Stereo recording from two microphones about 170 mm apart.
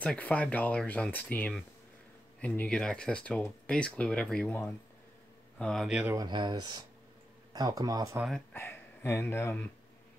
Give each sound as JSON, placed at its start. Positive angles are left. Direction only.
{"t": 0.0, "sound": "speech", "side_deg": 10}
{"t": 6.1, "sound": "speech", "side_deg": -25}
{"t": 8.5, "sound": "speech", "side_deg": 15}